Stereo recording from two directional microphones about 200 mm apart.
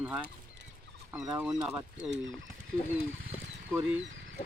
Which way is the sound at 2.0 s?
5° right (ahead or behind).